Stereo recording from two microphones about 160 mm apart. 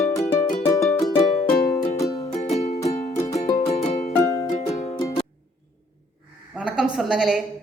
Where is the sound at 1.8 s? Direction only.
20° left (ahead or behind).